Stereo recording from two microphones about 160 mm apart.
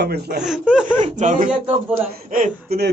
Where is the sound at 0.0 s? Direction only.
80° right.